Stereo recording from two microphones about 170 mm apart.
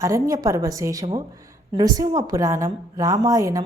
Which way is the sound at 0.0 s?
20° right (ahead or behind).